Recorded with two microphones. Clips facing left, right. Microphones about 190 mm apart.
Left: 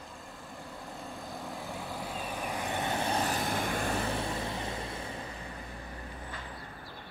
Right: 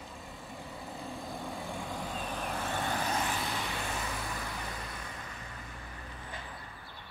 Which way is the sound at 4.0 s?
30° left (ahead or behind).